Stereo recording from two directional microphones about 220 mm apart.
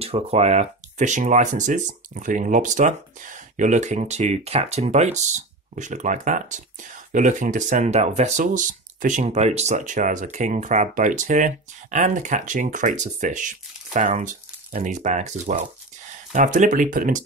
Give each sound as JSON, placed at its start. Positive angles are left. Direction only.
{"t": 0.0, "sound": "speech", "side_deg": -30}